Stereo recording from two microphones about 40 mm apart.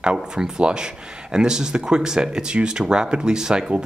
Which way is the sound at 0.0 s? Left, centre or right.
Right.